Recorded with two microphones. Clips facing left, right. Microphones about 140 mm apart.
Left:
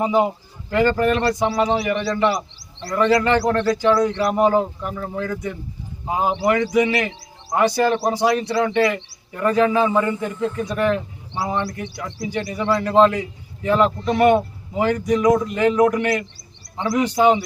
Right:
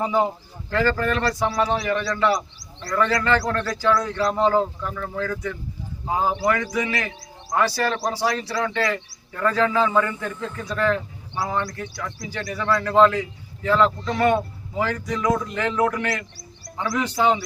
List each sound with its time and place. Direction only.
0.0 s a man's voice: 20° left (ahead or behind)